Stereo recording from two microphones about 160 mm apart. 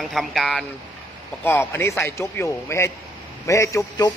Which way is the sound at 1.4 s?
15° left (ahead or behind).